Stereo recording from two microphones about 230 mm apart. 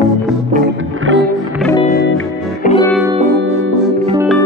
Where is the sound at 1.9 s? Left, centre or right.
Left.